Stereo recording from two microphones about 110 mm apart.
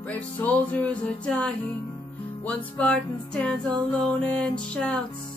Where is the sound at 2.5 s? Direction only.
10° left (ahead or behind).